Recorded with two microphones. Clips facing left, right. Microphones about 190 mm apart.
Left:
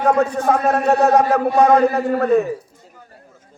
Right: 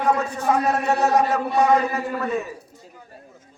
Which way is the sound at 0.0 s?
55° left (ahead or behind).